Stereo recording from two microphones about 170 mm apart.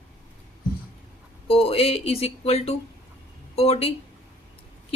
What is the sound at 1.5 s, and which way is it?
A woman's voice, 35° left (ahead or behind).